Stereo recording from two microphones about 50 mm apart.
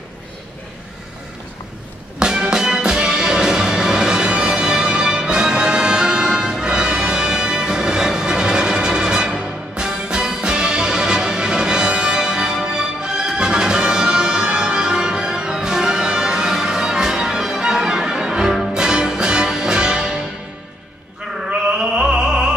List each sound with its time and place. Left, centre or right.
2.1 s music: centre
21.7 s mantra: centre